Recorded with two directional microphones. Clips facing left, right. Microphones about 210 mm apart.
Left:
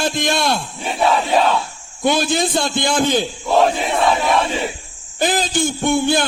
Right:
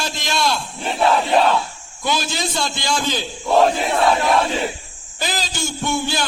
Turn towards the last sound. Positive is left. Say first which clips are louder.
# left 6 dB
turn(degrees=55)  # may be behind; listen again after turning